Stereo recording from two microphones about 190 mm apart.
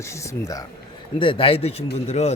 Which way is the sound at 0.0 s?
15° left (ahead or behind).